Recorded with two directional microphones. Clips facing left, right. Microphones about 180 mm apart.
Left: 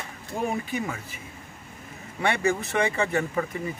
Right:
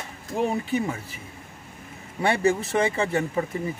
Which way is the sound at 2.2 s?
35° right (ahead or behind).